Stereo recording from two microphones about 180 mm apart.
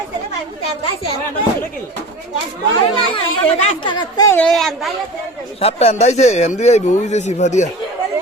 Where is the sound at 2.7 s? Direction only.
30° left (ahead or behind).